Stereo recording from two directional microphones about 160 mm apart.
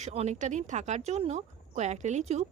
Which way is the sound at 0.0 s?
45° right (ahead or behind).